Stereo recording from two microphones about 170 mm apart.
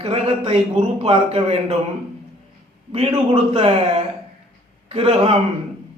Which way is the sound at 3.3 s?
35° right (ahead or behind).